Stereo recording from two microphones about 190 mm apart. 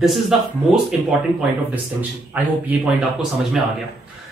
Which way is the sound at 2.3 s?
10° right (ahead or behind).